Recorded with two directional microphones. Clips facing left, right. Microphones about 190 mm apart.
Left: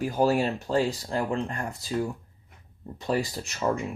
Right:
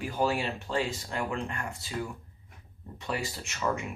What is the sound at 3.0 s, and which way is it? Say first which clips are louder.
Speech: left 7 dB; 35° left (ahead or behind).